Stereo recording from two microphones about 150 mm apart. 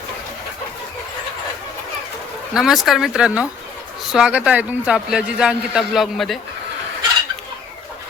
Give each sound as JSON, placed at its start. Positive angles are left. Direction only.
{"t": 2.5, "sound": "a man's voice", "side_deg": -5}